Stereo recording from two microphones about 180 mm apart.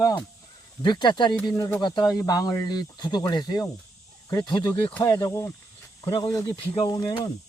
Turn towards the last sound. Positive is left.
turn(degrees=20)  # may be behind; listen again after turning